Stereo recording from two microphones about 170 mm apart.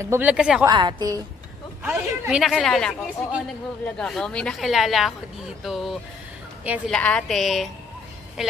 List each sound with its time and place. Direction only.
0.0 s a woman's voice: 10° right (ahead or behind)
0.7 s a woman's voice: 25° right (ahead or behind)
1.8 s a woman's voice: 10° right (ahead or behind)